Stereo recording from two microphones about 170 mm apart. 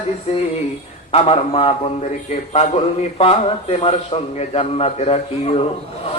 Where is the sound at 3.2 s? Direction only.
35° left (ahead or behind).